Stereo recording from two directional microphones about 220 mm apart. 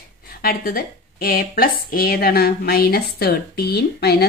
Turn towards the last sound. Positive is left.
turn(degrees=45)  # may be behind; listen again after turning